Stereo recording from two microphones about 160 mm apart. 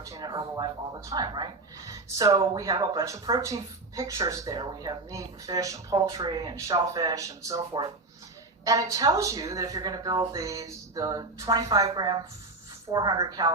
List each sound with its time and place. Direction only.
0.0 s speech: 20° right (ahead or behind)